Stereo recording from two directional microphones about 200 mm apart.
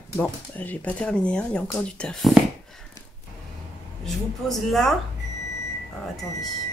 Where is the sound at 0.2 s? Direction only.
10° left (ahead or behind).